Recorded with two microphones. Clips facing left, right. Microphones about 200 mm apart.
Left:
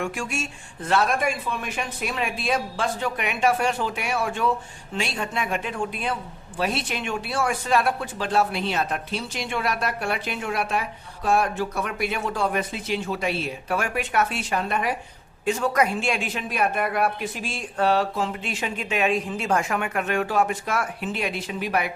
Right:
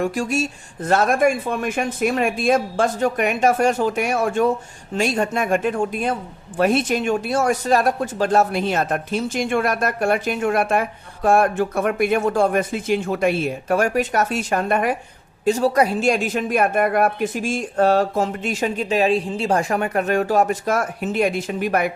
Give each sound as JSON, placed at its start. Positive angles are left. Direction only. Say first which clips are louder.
{"t": 0.0, "sound": "speech", "louder": "right 7 dB", "side_deg": -40}
{"t": 15.4, "sound": "speech", "louder": "right 5 dB", "side_deg": -35}